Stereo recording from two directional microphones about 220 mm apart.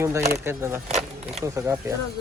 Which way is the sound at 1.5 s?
10° right (ahead or behind).